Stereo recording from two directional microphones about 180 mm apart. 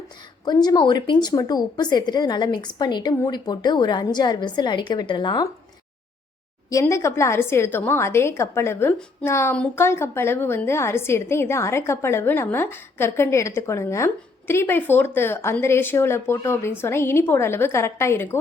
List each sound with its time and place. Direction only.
0.4 s a woman's voice: 25° left (ahead or behind)
6.7 s a woman's voice: 15° left (ahead or behind)